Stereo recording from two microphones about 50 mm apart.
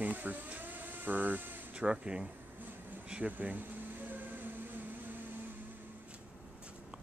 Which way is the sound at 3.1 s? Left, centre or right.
Right.